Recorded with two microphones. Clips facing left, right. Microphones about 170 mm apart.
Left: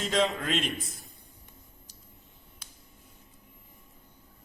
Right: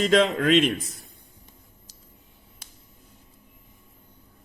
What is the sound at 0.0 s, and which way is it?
Speech, 70° right (ahead or behind).